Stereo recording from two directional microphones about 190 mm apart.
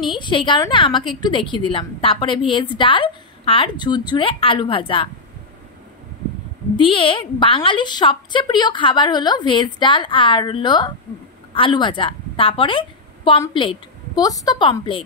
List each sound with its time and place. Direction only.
0.0 s a woman's voice: 25° left (ahead or behind)
6.8 s a woman's voice: 25° left (ahead or behind)